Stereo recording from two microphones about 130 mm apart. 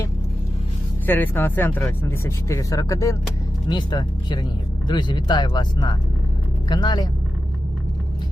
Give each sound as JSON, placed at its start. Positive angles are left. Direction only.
{"t": 1.0, "sound": "speech", "side_deg": 15}